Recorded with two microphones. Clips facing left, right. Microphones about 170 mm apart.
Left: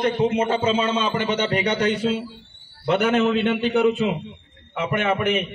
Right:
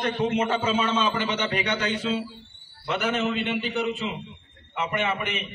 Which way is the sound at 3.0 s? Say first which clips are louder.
Left 6 dB; 55° left (ahead or behind).